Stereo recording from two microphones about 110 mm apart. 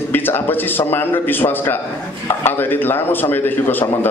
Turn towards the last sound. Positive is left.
turn(degrees=20)  # may be behind; listen again after turning